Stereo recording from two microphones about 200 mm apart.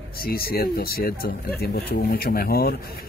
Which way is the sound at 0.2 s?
50° left (ahead or behind).